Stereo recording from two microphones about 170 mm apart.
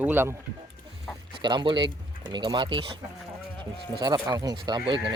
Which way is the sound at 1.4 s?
25° right (ahead or behind).